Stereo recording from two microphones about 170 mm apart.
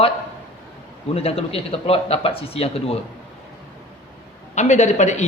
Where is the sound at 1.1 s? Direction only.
35° left (ahead or behind).